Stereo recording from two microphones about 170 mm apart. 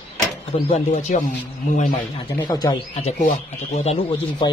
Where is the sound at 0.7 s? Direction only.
40° left (ahead or behind).